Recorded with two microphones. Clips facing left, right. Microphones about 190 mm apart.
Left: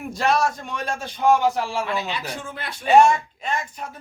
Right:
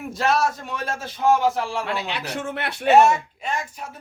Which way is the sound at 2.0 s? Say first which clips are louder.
Right 2 dB; 70° right (ahead or behind).